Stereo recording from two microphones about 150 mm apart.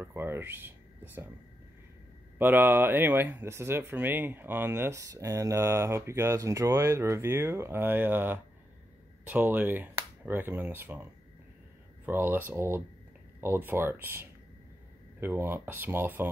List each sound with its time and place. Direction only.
0.0 s speech: 15° right (ahead or behind)
2.3 s speech: 15° right (ahead or behind)
12.1 s speech: 15° right (ahead or behind)